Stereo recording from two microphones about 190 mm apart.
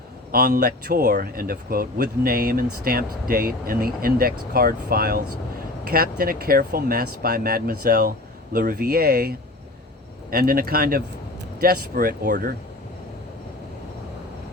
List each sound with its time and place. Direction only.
0.3 s speech: 50° right (ahead or behind)
10.3 s speech: 50° right (ahead or behind)